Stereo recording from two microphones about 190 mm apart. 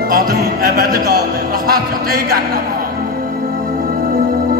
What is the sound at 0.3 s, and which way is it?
A man's voice, 55° right (ahead or behind).